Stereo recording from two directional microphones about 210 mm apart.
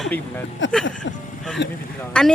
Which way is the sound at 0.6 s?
60° left (ahead or behind).